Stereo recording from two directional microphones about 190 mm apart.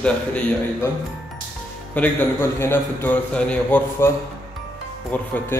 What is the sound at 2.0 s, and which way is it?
A man's voice, 5° left (ahead or behind).